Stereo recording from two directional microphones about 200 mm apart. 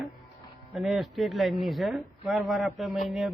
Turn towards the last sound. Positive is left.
turn(degrees=0)  # may be behind; listen again after turning